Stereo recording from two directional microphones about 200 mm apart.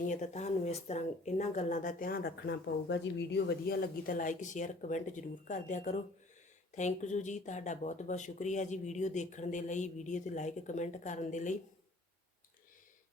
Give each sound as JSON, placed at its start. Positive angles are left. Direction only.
{"t": 0.0, "sound": "speech", "side_deg": 35}